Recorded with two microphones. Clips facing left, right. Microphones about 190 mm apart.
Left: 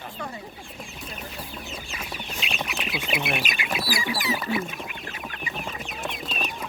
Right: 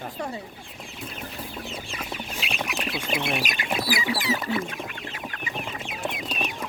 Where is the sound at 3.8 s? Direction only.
20° right (ahead or behind).